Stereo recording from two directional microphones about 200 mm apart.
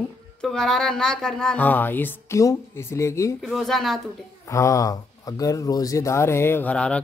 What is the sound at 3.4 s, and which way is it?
Speech, centre (ahead or behind).